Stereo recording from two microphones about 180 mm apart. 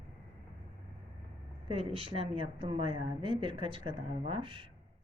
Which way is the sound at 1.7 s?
30° right (ahead or behind).